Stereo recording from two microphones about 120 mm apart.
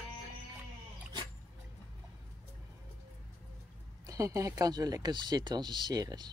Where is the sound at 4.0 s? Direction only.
30° right (ahead or behind).